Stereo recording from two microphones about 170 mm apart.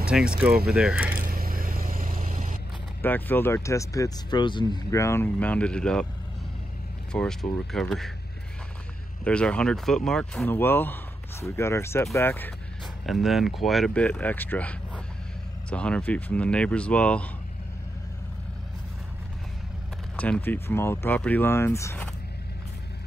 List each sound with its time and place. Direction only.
0.0 s speech: 5° right (ahead or behind)
1.3 s vehicle: 55° right (ahead or behind)
3.0 s speech: 10° left (ahead or behind)
7.1 s speech: 5° left (ahead or behind)
9.2 s speech: 5° left (ahead or behind)
13.0 s speech: centre (ahead or behind)
20.2 s speech: 10° left (ahead or behind)